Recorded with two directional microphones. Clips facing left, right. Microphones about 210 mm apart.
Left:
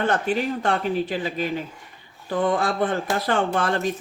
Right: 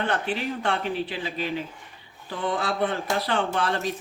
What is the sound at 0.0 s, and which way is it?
Speech, 45° left (ahead or behind).